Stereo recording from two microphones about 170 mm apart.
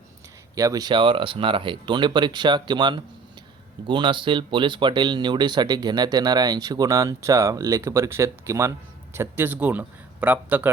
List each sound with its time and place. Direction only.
0.5 s a man's voice: 20° right (ahead or behind)